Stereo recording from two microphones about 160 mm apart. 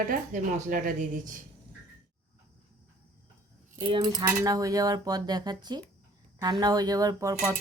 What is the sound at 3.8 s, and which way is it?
Speech, 30° right (ahead or behind).